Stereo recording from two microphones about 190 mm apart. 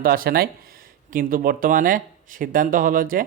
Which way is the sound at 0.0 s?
50° right (ahead or behind).